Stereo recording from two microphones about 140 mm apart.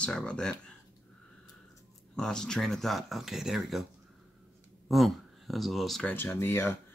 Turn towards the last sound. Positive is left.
turn(degrees=15)  # may be behind; listen again after turning